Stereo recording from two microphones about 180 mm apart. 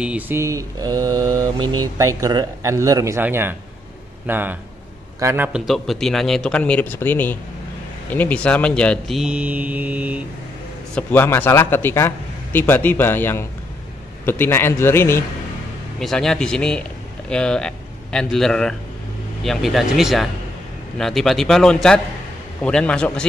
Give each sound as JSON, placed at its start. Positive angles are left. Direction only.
{"t": 0.0, "sound": "mantra", "side_deg": -10}
{"t": 5.7, "sound": "speech", "side_deg": 0}
{"t": 11.0, "sound": "speech", "side_deg": 10}
{"t": 16.0, "sound": "speech", "side_deg": 0}